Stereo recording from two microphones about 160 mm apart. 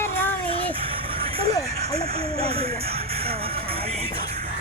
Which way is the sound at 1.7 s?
40° right (ahead or behind).